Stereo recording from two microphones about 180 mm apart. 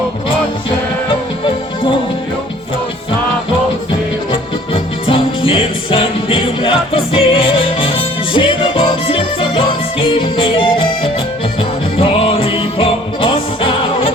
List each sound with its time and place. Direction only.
4.3 s music: 30° left (ahead or behind)